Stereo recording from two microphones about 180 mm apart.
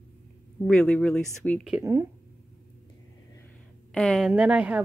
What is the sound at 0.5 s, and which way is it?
Speech, 5° left (ahead or behind).